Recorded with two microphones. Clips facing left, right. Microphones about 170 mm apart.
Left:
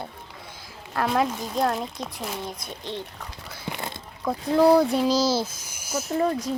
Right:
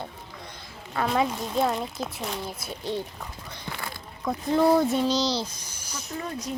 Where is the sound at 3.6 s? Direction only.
20° left (ahead or behind).